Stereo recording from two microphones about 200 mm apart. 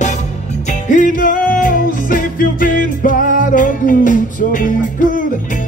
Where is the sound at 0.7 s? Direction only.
40° left (ahead or behind).